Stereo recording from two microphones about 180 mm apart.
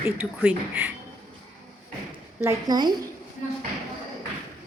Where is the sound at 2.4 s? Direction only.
20° right (ahead or behind).